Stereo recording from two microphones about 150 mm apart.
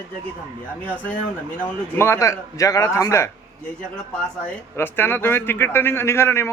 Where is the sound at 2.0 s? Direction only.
20° left (ahead or behind).